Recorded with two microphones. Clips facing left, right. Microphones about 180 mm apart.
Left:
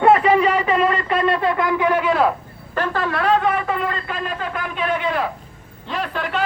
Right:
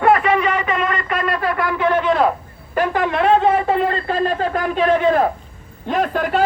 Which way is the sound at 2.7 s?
15° right (ahead or behind).